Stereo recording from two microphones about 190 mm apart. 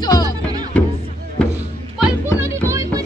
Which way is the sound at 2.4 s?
15° right (ahead or behind).